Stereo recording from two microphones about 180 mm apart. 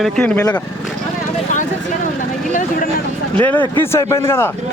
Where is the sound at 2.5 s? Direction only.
45° left (ahead or behind).